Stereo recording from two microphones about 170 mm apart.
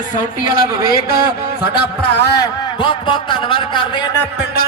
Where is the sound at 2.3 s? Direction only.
25° left (ahead or behind).